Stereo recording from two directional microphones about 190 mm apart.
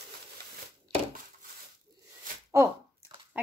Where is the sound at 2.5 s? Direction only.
15° right (ahead or behind).